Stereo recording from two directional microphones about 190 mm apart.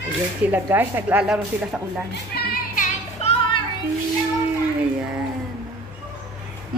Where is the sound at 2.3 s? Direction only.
45° left (ahead or behind).